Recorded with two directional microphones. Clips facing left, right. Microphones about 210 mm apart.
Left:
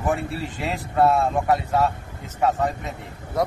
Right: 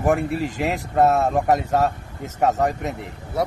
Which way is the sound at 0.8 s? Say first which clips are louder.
Even; 45° right (ahead or behind).